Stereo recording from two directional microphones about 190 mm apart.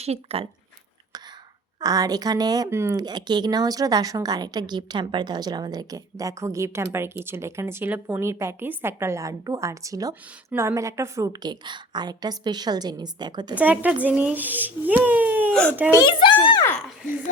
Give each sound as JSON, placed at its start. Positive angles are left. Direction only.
{"t": 0.0, "sound": "speech", "side_deg": -30}
{"t": 1.8, "sound": "a woman's voice", "side_deg": -20}
{"t": 13.6, "sound": "speech", "side_deg": -10}
{"t": 16.4, "sound": "a sound", "side_deg": 25}